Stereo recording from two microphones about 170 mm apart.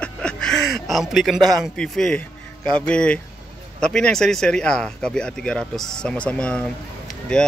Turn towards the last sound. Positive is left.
turn(degrees=5)  # may be behind; listen again after turning